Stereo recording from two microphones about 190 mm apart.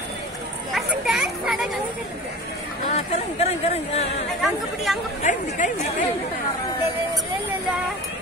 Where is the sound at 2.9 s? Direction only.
35° left (ahead or behind).